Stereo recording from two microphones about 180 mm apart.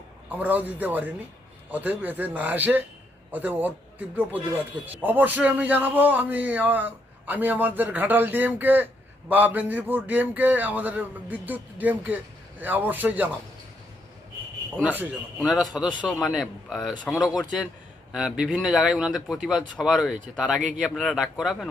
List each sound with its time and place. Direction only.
0.3 s a man's voice: 10° right (ahead or behind)
14.8 s speech: 10° right (ahead or behind)
20.6 s speech: 45° right (ahead or behind)
20.8 s speech: centre (ahead or behind)